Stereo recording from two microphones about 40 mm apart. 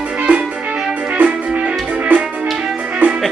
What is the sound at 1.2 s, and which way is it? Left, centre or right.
Music, right.